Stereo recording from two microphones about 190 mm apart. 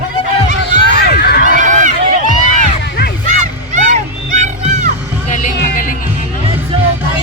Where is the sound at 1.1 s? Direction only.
55° left (ahead or behind).